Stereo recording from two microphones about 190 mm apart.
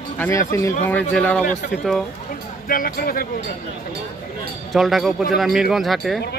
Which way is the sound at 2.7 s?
50° left (ahead or behind).